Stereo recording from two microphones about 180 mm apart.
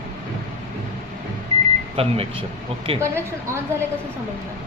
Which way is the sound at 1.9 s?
30° right (ahead or behind).